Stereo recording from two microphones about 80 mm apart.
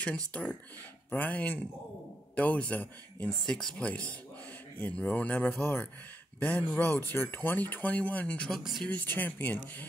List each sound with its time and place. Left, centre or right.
0.3 s speech: centre
3.4 s speech: centre
3.7 s speech: centre
8.5 s speech: centre
8.8 s speech: left